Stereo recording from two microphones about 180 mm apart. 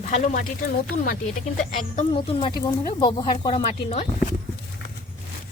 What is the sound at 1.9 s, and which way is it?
Speech, 35° left (ahead or behind).